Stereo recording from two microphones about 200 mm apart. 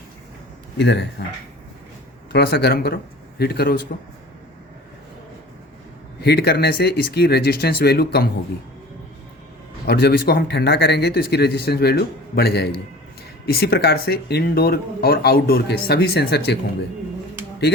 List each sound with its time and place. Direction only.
0.8 s speech: 60° left (ahead or behind)
2.3 s speech: 55° left (ahead or behind)
6.2 s speech: 55° left (ahead or behind)
9.8 s speech: 55° left (ahead or behind)